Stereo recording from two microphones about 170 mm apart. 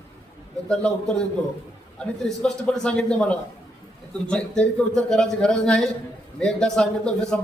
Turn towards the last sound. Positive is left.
turn(degrees=5)  # may be behind; listen again after turning